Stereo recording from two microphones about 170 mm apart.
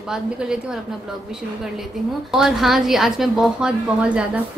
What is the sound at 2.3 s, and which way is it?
A woman's voice, centre (ahead or behind).